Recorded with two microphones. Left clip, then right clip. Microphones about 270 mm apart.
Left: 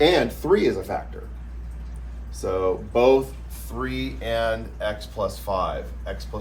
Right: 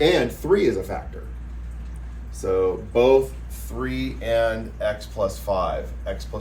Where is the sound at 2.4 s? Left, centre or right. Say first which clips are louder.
Right 2 dB; centre.